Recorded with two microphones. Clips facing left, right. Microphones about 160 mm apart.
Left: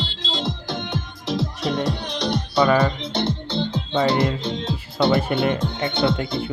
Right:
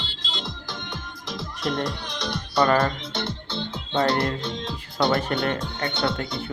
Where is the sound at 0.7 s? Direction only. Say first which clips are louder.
Left 8 dB; 60° left (ahead or behind).